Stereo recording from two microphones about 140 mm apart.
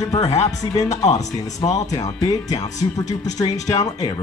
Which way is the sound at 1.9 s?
25° left (ahead or behind).